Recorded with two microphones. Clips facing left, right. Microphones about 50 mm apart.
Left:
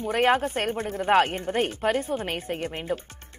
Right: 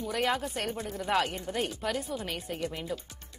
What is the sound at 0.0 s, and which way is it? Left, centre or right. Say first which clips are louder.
Speech: left 8 dB; left.